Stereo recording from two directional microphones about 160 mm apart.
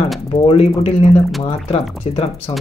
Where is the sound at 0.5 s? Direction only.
40° left (ahead or behind).